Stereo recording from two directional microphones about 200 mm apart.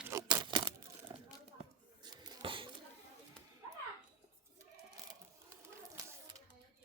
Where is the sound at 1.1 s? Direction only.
20° right (ahead or behind).